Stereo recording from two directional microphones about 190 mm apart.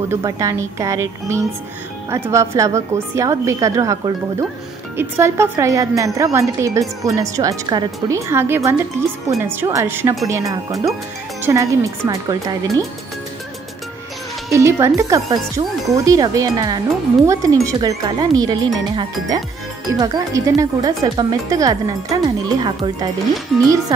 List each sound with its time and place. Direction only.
0.1 s a woman's voice: 15° right (ahead or behind)
14.5 s a woman's voice: 15° right (ahead or behind)